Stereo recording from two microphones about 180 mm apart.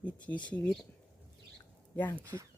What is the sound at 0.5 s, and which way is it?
Speech, 5° left (ahead or behind).